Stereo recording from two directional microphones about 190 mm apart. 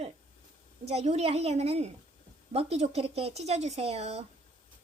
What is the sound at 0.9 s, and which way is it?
Speech, 35° right (ahead or behind).